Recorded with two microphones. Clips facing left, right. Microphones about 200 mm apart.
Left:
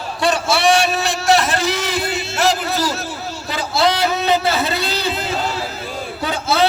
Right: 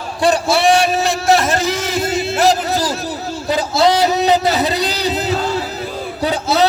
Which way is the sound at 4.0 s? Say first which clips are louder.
Right 3 dB; 40° right (ahead or behind).